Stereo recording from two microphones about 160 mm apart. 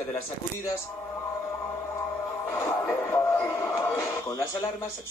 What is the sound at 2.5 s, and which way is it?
Music, 15° left (ahead or behind).